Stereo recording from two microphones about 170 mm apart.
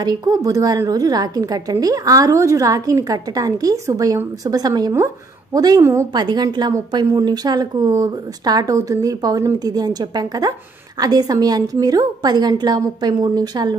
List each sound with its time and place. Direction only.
0.0 s a woman's voice: 20° right (ahead or behind)